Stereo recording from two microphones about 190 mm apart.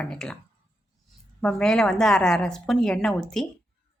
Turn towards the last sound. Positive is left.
turn(degrees=5)  # may be behind; listen again after turning